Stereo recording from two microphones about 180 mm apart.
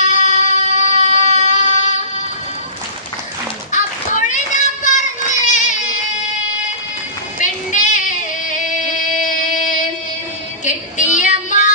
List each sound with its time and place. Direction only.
0.0 s music: 45° left (ahead or behind)
0.9 s music: 30° right (ahead or behind)
1.5 s a sound: 45° left (ahead or behind)
3.7 s child singing: 45° left (ahead or behind)
7.3 s child singing: 45° left (ahead or behind)
10.6 s child singing: 45° left (ahead or behind)